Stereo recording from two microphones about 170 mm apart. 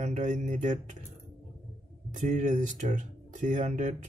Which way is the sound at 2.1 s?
50° right (ahead or behind).